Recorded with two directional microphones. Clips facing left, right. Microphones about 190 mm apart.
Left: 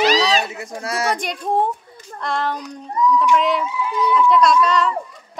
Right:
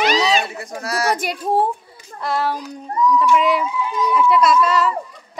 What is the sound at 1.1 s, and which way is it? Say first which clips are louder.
A woman's voice: right 1 dB; 5° right (ahead or behind).